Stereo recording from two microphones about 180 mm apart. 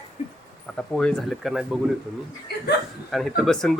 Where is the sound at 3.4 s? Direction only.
Centre (ahead or behind).